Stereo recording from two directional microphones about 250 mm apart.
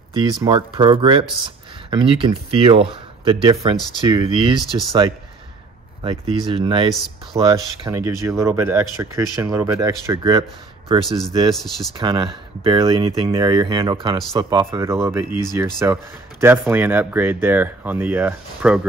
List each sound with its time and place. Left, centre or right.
0.1 s speech: centre
6.4 s speech: centre
11.1 s speech: centre
12.0 s speech: centre